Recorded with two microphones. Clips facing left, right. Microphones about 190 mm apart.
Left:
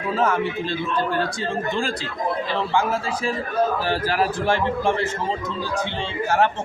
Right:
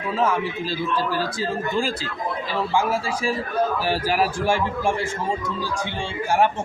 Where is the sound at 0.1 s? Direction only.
Centre (ahead or behind).